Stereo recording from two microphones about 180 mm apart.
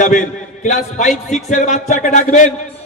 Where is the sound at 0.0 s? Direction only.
45° left (ahead or behind).